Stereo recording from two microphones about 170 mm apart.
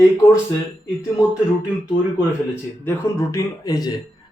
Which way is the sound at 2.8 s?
20° left (ahead or behind).